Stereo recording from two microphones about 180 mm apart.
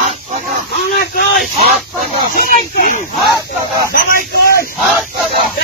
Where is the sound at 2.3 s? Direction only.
55° left (ahead or behind).